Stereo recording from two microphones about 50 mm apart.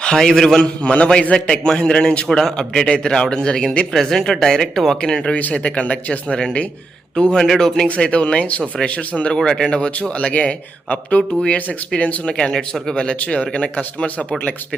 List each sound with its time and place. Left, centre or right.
0.0 s a man's voice: centre
0.6 s a man's voice: left
7.9 s a man's voice: left
9.3 s a man's voice: centre
12.3 s a man's voice: centre